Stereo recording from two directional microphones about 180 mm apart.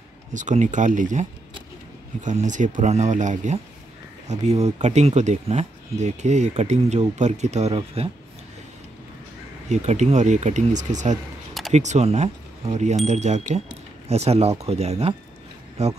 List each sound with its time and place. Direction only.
0.3 s speech: 45° right (ahead or behind)
2.2 s speech: 45° right (ahead or behind)
9.7 s speech: 40° right (ahead or behind)